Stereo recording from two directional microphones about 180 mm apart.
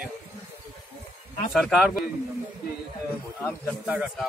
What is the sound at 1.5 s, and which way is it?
Speech, centre (ahead or behind).